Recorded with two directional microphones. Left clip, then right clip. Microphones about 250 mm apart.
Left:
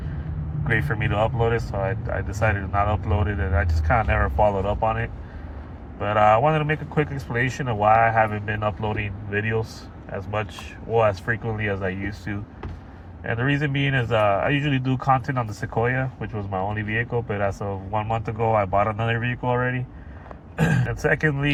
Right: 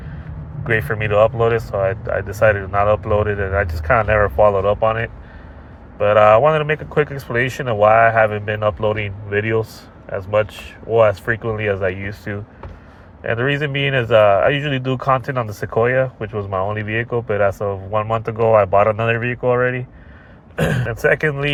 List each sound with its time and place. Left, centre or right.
0.7 s speech: right